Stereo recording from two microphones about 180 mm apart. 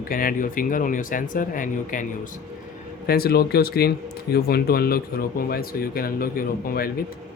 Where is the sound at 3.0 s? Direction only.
55° left (ahead or behind).